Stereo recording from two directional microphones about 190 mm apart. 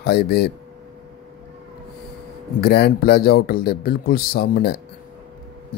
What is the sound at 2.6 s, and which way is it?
A man's voice, 55° left (ahead or behind).